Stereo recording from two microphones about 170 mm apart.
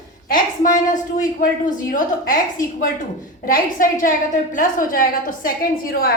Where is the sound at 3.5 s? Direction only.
55° left (ahead or behind).